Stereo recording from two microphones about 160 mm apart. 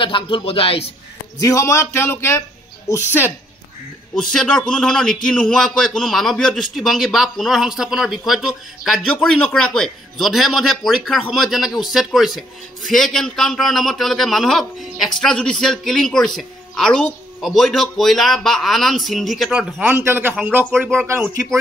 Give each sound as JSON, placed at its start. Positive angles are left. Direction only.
{"t": 0.0, "sound": "speech", "side_deg": 30}
{"t": 1.4, "sound": "speech", "side_deg": 20}
{"t": 4.1, "sound": "a man's voice", "side_deg": 5}